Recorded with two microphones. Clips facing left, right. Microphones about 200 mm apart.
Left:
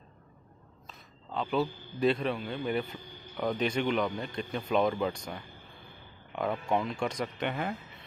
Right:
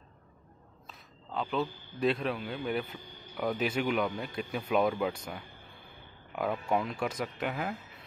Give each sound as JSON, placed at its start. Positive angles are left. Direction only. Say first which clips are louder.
{"t": 0.8, "sound": "a man's voice", "louder": "left 1 dB", "side_deg": 0}